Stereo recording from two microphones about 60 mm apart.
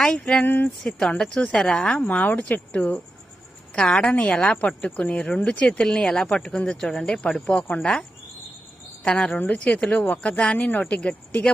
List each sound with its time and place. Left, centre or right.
0.0 s speech: centre
0.4 s speech: left
0.9 s speech: centre
9.4 s speech: left